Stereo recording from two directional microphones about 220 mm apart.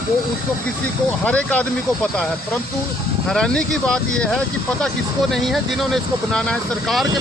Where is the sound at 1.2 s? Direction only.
5° left (ahead or behind).